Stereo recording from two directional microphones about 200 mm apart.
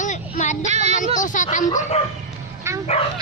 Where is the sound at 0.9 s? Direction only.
40° left (ahead or behind).